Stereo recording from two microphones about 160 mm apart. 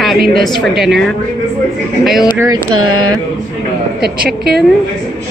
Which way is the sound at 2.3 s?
15° right (ahead or behind).